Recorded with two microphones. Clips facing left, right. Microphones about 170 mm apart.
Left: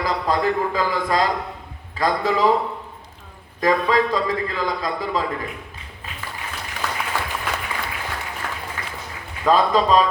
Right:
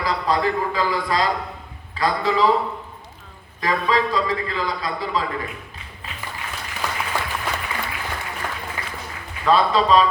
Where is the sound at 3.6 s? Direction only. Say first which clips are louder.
Left 3 dB; 45° left (ahead or behind).